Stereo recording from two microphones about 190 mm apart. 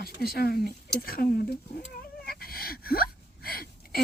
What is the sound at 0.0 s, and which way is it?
Speech, 55° left (ahead or behind).